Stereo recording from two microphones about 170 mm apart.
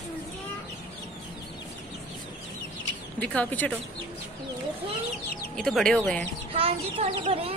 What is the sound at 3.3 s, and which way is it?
Speech, 10° left (ahead or behind).